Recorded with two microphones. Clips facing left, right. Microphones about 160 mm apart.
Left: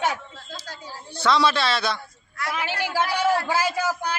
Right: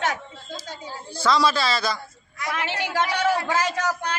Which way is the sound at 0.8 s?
Centre (ahead or behind).